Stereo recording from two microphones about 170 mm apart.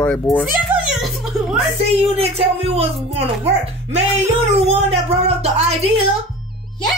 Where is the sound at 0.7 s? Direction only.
10° right (ahead or behind).